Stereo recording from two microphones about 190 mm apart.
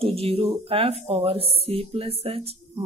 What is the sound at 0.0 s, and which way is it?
A woman's voice, 30° right (ahead or behind).